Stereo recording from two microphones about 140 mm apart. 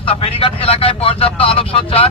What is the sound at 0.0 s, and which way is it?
Speech, 45° left (ahead or behind).